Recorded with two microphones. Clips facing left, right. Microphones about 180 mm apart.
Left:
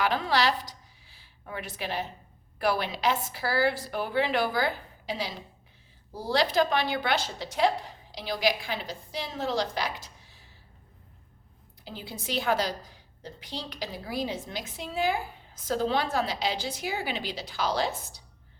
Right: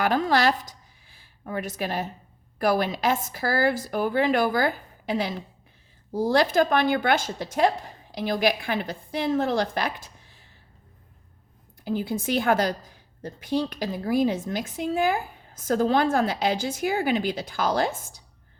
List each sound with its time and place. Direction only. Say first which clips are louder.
0.0 s a woman's voice: right 4 dB; 45° right (ahead or behind)
11.9 s a woman's voice: right 11 dB; 50° right (ahead or behind)